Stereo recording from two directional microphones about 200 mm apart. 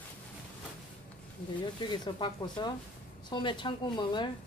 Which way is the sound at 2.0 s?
25° left (ahead or behind).